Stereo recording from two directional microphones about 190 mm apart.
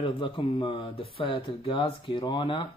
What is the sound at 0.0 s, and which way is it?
Speech, 25° left (ahead or behind).